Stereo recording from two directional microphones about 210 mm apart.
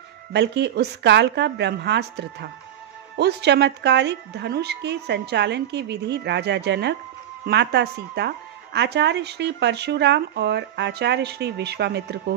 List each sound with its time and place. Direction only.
0.3 s a woman's voice: 55° right (ahead or behind)